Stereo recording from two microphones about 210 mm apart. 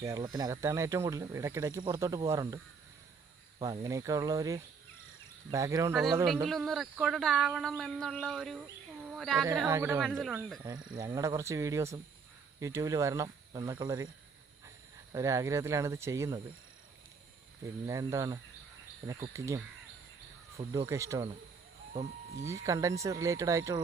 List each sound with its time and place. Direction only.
0.0 s speech: 15° right (ahead or behind)
6.2 s speech: centre (ahead or behind)
9.4 s speech: 10° right (ahead or behind)
10.0 s speech: centre (ahead or behind)
10.6 s speech: 20° right (ahead or behind)
15.1 s speech: 15° right (ahead or behind)
17.8 s speech: 15° right (ahead or behind)
20.7 s speech: 20° right (ahead or behind)
22.3 s speech: 15° right (ahead or behind)